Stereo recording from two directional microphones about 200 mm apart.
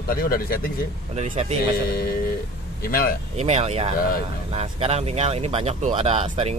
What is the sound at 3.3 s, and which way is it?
Speech, 35° right (ahead or behind).